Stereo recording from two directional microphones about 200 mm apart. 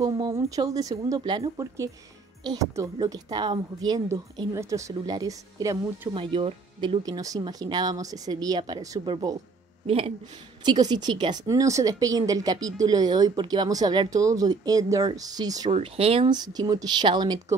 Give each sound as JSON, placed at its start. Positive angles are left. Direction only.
{"t": 0.0, "sound": "a woman's voice", "side_deg": -20}
{"t": 15.7, "sound": "a woman's voice", "side_deg": -30}